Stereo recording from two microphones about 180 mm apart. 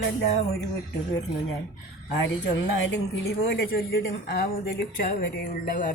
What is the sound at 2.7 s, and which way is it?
Speech, 80° left.